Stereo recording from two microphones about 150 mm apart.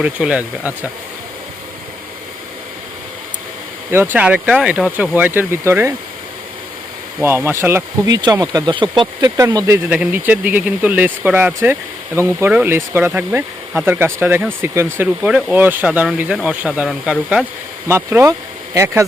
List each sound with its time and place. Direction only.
0.0 s speech: 5° right (ahead or behind)
3.9 s speech: 10° right (ahead or behind)
7.2 s speech: 15° right (ahead or behind)
17.8 s speech: 15° right (ahead or behind)